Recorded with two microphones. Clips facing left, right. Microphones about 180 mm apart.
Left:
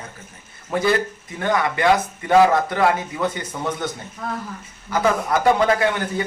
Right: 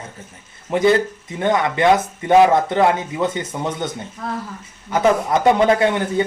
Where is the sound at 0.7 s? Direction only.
20° right (ahead or behind).